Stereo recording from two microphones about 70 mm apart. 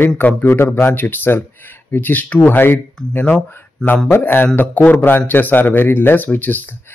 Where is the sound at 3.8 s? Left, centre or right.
Centre.